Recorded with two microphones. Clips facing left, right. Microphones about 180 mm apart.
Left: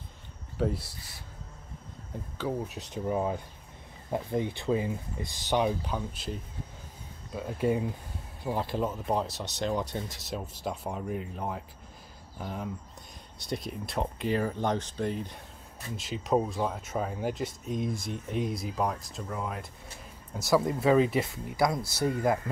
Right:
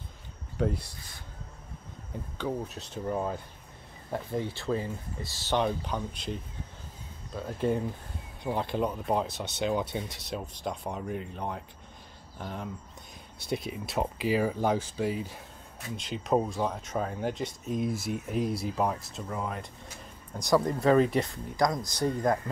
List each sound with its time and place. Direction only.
0.6 s speech: 5° left (ahead or behind)
2.3 s speech: 10° left (ahead or behind)